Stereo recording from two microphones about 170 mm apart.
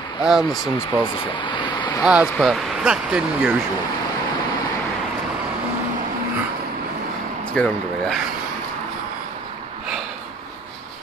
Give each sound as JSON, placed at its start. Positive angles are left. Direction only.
{"t": 0.2, "sound": "speech", "side_deg": -5}
{"t": 1.3, "sound": "a sound", "side_deg": 30}
{"t": 2.0, "sound": "speech", "side_deg": -5}
{"t": 7.5, "sound": "speech", "side_deg": 5}